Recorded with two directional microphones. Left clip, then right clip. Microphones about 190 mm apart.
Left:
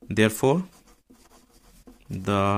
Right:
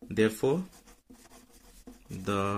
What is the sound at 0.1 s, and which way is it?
Speech, 45° left (ahead or behind).